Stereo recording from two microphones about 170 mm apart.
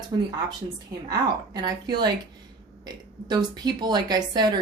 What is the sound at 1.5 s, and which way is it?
Speech, 25° right (ahead or behind).